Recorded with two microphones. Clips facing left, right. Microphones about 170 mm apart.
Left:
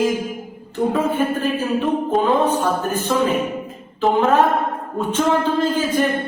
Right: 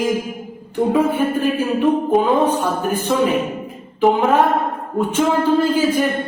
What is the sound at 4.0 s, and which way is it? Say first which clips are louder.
Music: right 1 dB; 15° right (ahead or behind).